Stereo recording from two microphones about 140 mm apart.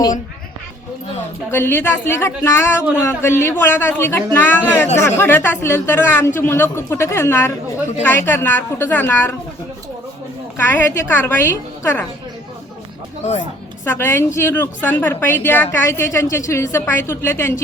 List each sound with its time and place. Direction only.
1.5 s a woman's voice: 15° left (ahead or behind)
10.6 s a woman's voice: 15° left (ahead or behind)
13.8 s a woman's voice: 15° left (ahead or behind)